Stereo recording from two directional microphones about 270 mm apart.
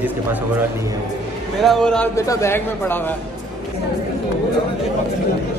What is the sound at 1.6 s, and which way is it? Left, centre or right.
A man's voice, centre.